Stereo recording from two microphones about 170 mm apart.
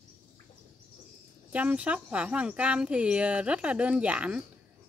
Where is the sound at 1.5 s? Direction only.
10° right (ahead or behind).